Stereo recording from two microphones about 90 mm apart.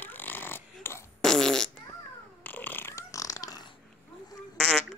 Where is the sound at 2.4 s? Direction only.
20° left (ahead or behind); by 3.7 s 45° left (ahead or behind).